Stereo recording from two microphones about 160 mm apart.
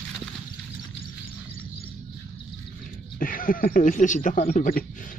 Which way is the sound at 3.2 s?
60° left (ahead or behind).